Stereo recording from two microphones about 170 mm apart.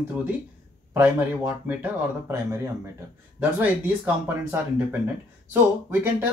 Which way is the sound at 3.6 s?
10° right (ahead or behind).